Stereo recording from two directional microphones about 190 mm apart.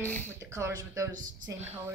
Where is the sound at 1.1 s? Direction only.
45° right (ahead or behind).